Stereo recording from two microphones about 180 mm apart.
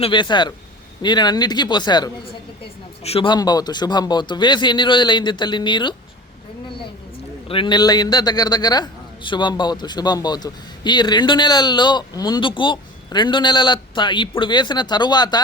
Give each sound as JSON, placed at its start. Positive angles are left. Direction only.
{"t": 0.0, "sound": "a man's voice", "side_deg": 25}
{"t": 7.4, "sound": "a man's voice", "side_deg": 30}